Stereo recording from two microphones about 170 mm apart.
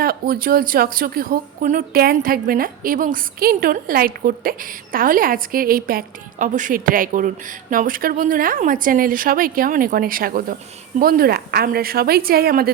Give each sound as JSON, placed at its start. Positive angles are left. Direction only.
{"t": 0.0, "sound": "a woman's voice", "side_deg": -60}